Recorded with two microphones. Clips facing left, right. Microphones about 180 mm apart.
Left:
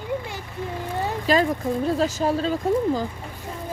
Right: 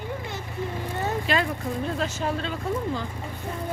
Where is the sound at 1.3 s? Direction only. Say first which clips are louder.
Left 10 dB; 40° left (ahead or behind).